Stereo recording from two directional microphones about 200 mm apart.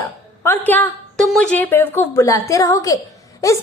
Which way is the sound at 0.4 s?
10° left (ahead or behind).